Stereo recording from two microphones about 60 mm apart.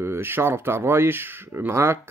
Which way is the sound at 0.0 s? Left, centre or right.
Right.